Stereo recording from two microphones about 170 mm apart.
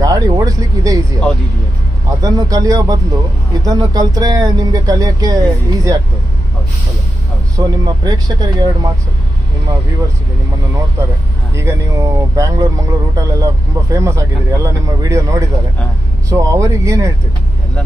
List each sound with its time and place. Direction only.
0.0 s speech: 20° right (ahead or behind)
7.5 s speech: 20° right (ahead or behind)
11.5 s a man's voice: 15° right (ahead or behind)